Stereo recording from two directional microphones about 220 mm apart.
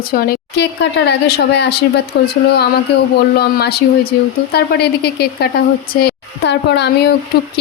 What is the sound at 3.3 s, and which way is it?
A woman's voice, 45° left (ahead or behind).